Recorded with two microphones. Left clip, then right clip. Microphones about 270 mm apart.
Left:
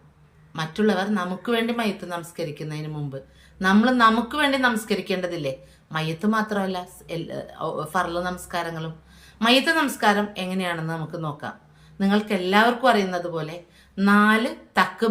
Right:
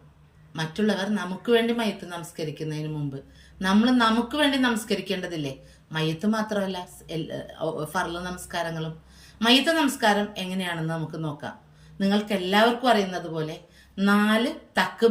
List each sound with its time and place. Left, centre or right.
0.5 s a woman's voice: centre